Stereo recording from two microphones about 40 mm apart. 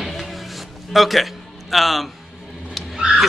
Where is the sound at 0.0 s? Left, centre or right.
Centre.